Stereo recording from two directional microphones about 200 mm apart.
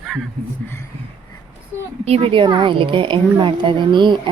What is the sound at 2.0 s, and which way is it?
Speech, 30° right (ahead or behind).